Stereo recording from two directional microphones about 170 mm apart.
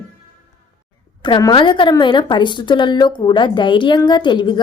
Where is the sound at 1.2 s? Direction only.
25° left (ahead or behind).